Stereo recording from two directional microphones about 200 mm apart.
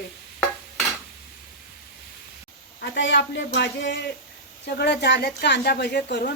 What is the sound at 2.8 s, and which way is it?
A woman's voice, 65° left (ahead or behind).